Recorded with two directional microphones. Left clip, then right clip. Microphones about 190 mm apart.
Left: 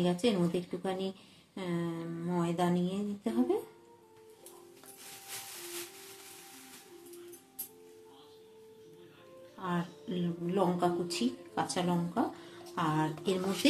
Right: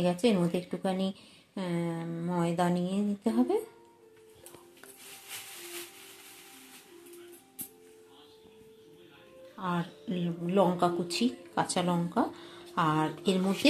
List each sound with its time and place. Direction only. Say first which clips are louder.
0.0 s speech: right 3 dB; 25° right (ahead or behind)
9.6 s speech: right 3 dB; 25° right (ahead or behind)